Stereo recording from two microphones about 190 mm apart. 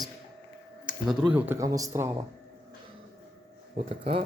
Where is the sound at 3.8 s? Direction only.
35° right (ahead or behind).